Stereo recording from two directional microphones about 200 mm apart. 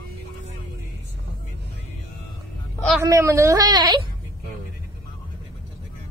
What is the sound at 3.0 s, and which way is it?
A woman's voice, 15° right (ahead or behind).